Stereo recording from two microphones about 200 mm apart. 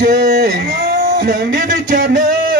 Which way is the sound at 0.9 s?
45° right (ahead or behind).